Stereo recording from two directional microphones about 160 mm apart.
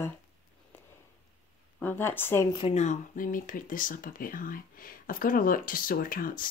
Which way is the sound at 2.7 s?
45° left (ahead or behind).